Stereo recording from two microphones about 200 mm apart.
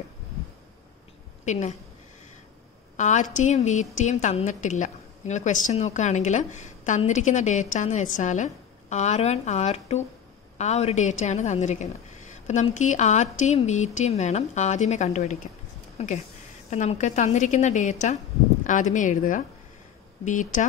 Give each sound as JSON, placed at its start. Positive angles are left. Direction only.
{"t": 1.4, "sound": "a woman's voice", "side_deg": 35}
{"t": 3.0, "sound": "a woman's voice", "side_deg": 40}